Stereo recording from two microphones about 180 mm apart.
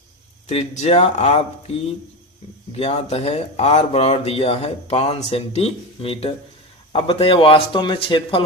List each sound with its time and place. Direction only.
0.4 s a man's voice: 35° left (ahead or behind)